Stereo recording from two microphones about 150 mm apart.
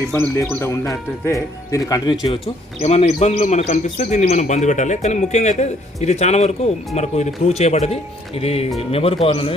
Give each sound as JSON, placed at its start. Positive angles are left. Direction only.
{"t": 0.1, "sound": "speech", "side_deg": 20}
{"t": 2.4, "sound": "a man's voice", "side_deg": 45}